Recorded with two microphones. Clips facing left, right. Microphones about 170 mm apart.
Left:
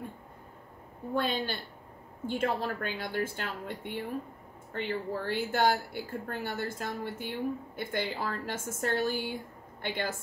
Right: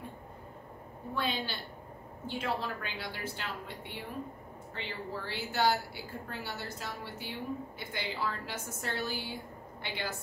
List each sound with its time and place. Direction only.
1.1 s a woman's voice: 50° left (ahead or behind)